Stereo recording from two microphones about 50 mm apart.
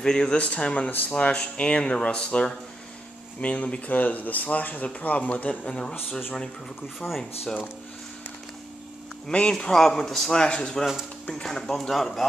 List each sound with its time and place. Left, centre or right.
0.0 s speech: centre
7.0 s speech: left
9.3 s speech: centre
10.4 s speech: centre
11.4 s speech: centre